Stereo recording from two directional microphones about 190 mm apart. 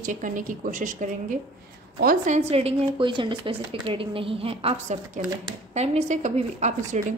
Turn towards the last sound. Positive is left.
turn(degrees=-40)  # may be behind; listen again after turning